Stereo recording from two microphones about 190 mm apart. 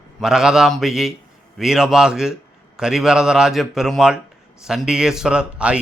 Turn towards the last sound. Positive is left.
turn(degrees=-5)  # may be behind; listen again after turning